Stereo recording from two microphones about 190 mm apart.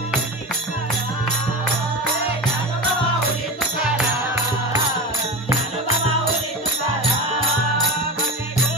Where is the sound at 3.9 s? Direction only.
10° right (ahead or behind).